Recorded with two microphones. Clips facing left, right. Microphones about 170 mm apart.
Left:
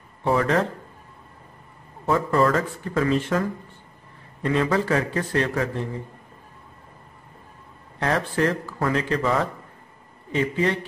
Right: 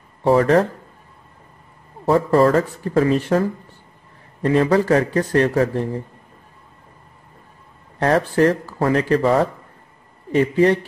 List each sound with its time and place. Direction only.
0.2 s speech: 35° right (ahead or behind)
2.0 s speech: 35° right (ahead or behind)
8.0 s speech: 45° right (ahead or behind)